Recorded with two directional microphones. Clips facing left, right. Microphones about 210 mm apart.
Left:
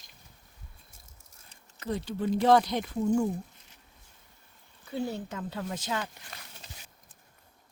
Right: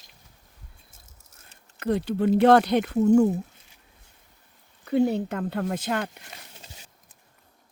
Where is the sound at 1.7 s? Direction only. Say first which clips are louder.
Right 8 dB; 60° right (ahead or behind).